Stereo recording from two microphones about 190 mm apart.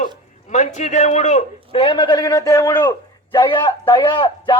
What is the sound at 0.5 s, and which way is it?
A woman's voice, 40° left (ahead or behind).